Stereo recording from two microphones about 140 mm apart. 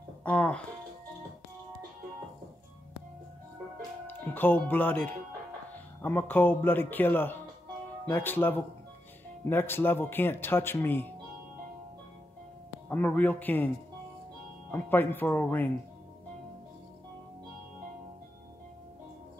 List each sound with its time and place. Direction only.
0.2 s music: 10° left (ahead or behind)
4.1 s speech: 15° left (ahead or behind)
12.8 s speech: 15° left (ahead or behind)
14.7 s speech: 15° left (ahead or behind)